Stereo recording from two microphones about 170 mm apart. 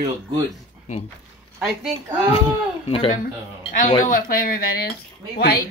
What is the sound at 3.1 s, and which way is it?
Speech, 55° left (ahead or behind).